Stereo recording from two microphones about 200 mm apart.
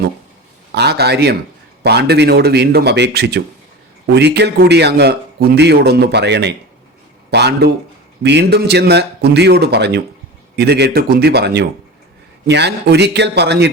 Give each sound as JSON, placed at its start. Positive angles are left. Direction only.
{"t": 0.7, "sound": "a man's voice", "side_deg": -55}